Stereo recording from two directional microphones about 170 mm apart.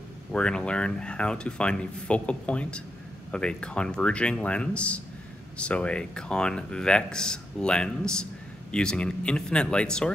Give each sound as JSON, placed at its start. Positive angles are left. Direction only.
{"t": 0.3, "sound": "speech", "side_deg": 5}